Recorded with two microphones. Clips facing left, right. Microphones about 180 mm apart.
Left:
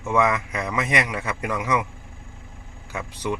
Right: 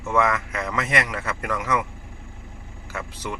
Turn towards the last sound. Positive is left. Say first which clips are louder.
# left 3 dB
turn(degrees=15)  # may be behind; listen again after turning